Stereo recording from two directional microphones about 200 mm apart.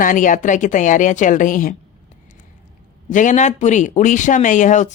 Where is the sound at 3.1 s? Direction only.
40° left (ahead or behind).